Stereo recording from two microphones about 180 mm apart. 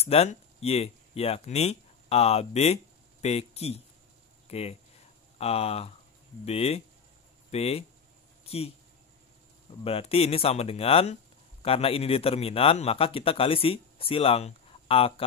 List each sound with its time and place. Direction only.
0.0 s speech: 35° left (ahead or behind)
9.8 s speech: 30° left (ahead or behind)